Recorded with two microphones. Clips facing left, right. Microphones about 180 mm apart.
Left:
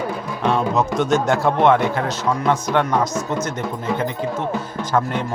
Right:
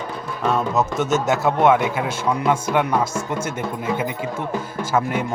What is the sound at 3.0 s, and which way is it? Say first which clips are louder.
Speech: left 2 dB; 25° right (ahead or behind).